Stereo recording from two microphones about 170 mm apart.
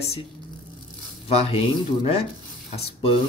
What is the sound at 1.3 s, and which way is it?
Speech, 35° left (ahead or behind).